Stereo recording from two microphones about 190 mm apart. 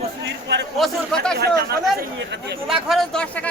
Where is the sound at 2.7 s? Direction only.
Centre (ahead or behind).